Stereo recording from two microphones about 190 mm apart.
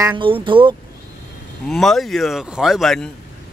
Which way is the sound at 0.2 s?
25° right (ahead or behind).